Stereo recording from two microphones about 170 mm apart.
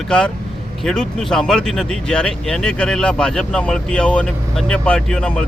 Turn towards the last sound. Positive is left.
turn(degrees=5)  # may be behind; listen again after turning